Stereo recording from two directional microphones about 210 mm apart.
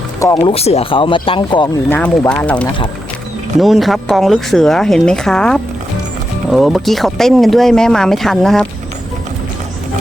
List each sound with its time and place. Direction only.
0.2 s speech: 20° left (ahead or behind)
1.9 s speech: 5° left (ahead or behind)